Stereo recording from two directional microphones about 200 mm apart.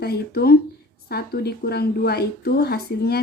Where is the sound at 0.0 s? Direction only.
50° left (ahead or behind).